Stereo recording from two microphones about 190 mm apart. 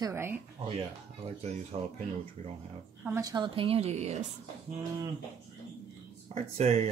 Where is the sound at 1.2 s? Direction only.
30° right (ahead or behind).